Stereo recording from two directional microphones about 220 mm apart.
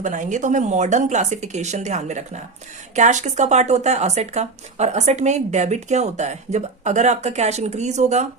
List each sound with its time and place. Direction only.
0.0 s speech: 35° right (ahead or behind)